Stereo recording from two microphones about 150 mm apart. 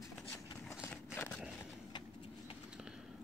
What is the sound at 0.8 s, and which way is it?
Horse, 15° left (ahead or behind).